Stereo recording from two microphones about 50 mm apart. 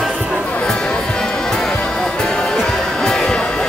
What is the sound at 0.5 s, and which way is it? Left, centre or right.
Music, left.